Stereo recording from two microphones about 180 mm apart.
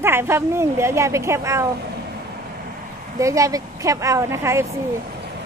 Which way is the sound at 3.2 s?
15° right (ahead or behind).